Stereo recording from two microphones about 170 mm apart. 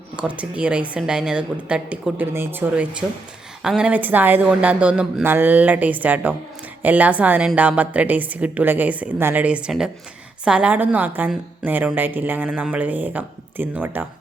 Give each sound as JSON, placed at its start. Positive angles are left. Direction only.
{"t": 0.2, "sound": "a woman's voice", "side_deg": -5}